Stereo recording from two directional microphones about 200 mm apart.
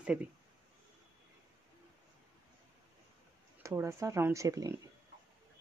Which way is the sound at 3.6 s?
15° right (ahead or behind).